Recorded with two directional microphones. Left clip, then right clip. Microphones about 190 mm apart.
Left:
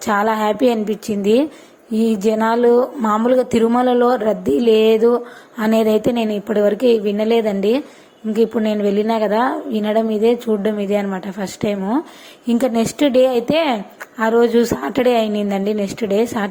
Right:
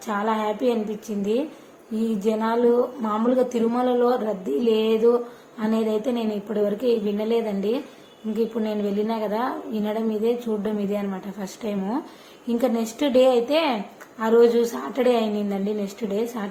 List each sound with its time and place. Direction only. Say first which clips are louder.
0.0 s a woman's voice: left 8 dB; 50° left (ahead or behind)